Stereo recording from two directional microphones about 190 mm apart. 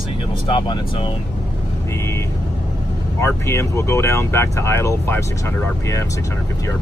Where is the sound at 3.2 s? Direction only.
15° left (ahead or behind).